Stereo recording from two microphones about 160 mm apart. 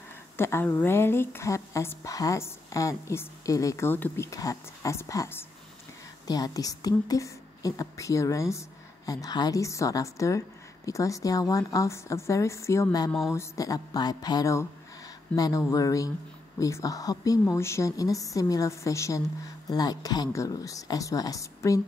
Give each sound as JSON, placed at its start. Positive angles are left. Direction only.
{"t": 0.4, "sound": "a woman's voice", "side_deg": 15}